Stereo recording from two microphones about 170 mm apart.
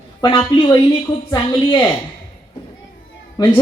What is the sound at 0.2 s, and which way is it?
Speech, 25° left (ahead or behind).